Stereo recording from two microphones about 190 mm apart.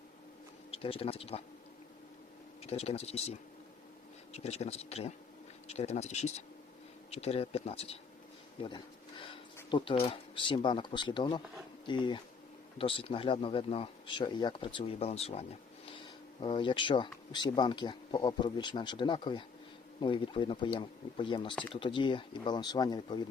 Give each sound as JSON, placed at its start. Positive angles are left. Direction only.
{"t": 0.7, "sound": "speech", "side_deg": 30}
{"t": 2.6, "sound": "speech", "side_deg": 30}
{"t": 8.6, "sound": "a sound", "side_deg": 25}
{"t": 9.6, "sound": "speech", "side_deg": 25}